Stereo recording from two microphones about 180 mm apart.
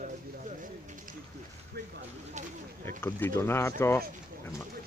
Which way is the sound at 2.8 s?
15° left (ahead or behind).